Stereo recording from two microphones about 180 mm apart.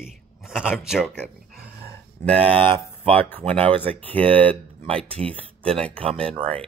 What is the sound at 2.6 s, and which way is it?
Speech, 10° left (ahead or behind).